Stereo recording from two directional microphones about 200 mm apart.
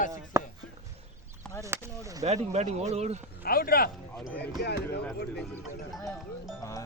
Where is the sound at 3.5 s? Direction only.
45° left (ahead or behind).